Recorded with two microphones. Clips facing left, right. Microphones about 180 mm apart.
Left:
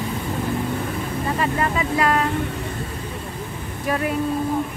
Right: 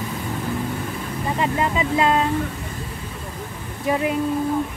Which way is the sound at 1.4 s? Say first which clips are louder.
Right 2 dB; 20° right (ahead or behind).